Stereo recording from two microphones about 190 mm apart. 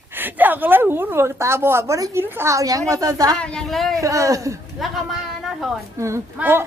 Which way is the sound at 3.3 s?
5° left (ahead or behind).